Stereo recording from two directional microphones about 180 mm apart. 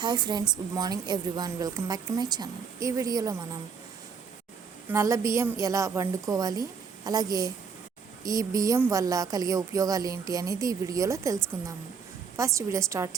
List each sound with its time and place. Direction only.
0.0 s speech: 25° right (ahead or behind)
4.9 s a woman's voice: 15° right (ahead or behind)
12.5 s a woman's voice: 15° right (ahead or behind)